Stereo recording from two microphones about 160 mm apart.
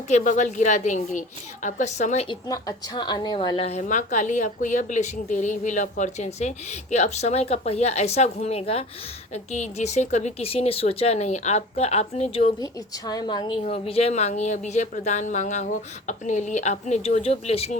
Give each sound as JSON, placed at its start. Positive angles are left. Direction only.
{"t": 0.1, "sound": "a woman's voice", "side_deg": 50}
{"t": 2.3, "sound": "a woman's voice", "side_deg": 25}
{"t": 12.5, "sound": "a woman's voice", "side_deg": 25}